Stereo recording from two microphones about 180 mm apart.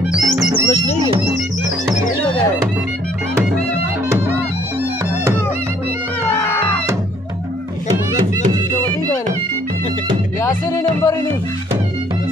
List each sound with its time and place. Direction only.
0.1 s music: centre (ahead or behind)
0.7 s music: 35° left (ahead or behind)
10.4 s music: 15° left (ahead or behind)